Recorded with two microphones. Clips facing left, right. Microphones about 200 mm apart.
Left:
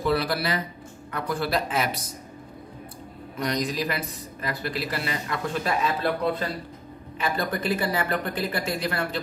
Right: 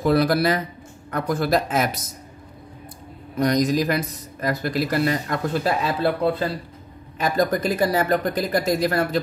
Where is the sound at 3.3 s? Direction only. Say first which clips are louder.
Right 8 dB; 40° right (ahead or behind).